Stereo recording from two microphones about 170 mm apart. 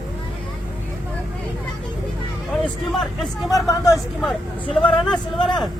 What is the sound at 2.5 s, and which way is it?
Vehicle, centre (ahead or behind).